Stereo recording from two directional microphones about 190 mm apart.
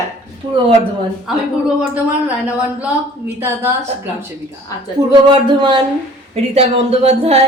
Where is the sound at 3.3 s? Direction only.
10° right (ahead or behind).